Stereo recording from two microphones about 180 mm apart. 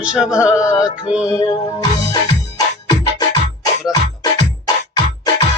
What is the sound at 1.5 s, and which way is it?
Music, 20° left (ahead or behind).